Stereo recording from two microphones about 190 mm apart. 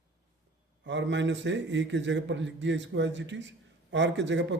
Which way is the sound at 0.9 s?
70° right (ahead or behind).